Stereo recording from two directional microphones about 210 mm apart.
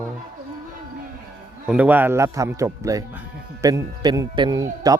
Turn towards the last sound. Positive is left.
turn(degrees=-15)  # may be behind; listen again after turning